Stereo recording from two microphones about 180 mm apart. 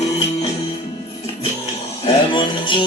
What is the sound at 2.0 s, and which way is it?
Music, 25° left (ahead or behind).